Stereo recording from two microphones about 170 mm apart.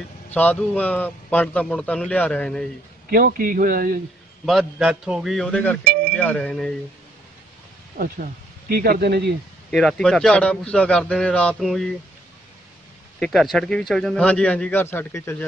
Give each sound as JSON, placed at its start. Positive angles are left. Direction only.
{"t": 0.3, "sound": "a man's voice", "side_deg": 10}
{"t": 3.1, "sound": "speech", "side_deg": -60}
{"t": 4.5, "sound": "a man's voice", "side_deg": 0}
{"t": 8.0, "sound": "speech", "side_deg": -60}
{"t": 9.7, "sound": "a man's voice", "side_deg": 5}
{"t": 13.2, "sound": "a man's voice", "side_deg": 0}